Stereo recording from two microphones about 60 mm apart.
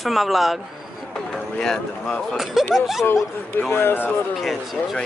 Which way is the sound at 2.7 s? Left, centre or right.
Centre.